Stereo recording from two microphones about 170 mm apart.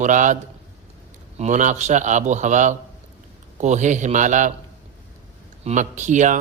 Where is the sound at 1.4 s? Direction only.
45° right (ahead or behind).